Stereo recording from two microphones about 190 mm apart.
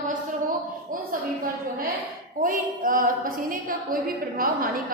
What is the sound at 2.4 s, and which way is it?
A woman's voice, 45° right (ahead or behind).